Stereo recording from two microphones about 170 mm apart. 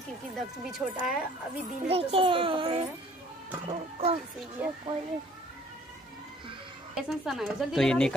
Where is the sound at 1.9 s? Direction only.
35° right (ahead or behind).